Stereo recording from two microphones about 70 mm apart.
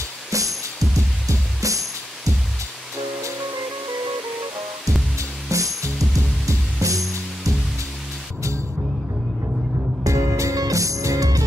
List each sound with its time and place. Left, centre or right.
0.3 s music: right
5.5 s music: right
10.0 s music: right